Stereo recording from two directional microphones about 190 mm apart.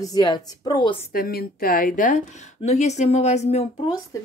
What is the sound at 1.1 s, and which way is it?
A woman's voice, 50° left (ahead or behind).